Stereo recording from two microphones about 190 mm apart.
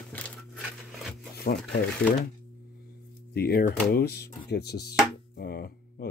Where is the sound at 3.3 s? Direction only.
55° left (ahead or behind).